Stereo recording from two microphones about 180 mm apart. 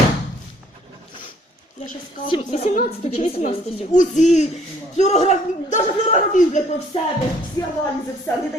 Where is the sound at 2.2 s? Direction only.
30° left (ahead or behind).